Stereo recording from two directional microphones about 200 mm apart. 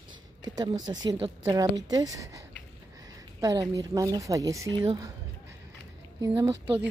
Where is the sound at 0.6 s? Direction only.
20° right (ahead or behind).